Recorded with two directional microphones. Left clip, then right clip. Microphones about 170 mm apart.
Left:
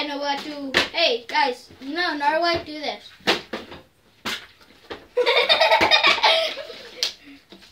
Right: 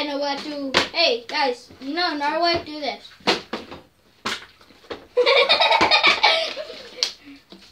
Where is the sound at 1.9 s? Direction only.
10° left (ahead or behind).